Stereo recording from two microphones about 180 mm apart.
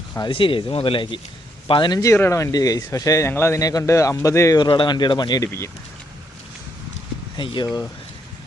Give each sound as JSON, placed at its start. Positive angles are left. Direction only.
{"t": 0.2, "sound": "speech", "side_deg": 30}
{"t": 7.3, "sound": "speech", "side_deg": 25}